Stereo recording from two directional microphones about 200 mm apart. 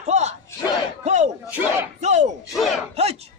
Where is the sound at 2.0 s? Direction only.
35° right (ahead or behind).